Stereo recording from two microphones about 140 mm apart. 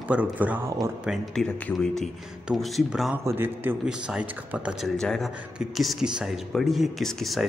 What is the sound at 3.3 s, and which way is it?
Speech, 15° right (ahead or behind).